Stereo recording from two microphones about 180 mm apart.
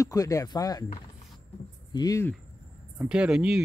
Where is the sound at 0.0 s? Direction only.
20° left (ahead or behind).